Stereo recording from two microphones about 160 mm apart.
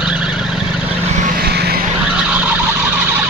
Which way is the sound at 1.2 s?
75° right (ahead or behind).